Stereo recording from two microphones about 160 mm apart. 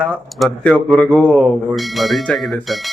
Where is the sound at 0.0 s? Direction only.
5° left (ahead or behind).